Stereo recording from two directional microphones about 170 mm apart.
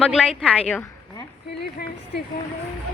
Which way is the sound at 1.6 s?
70° left (ahead or behind).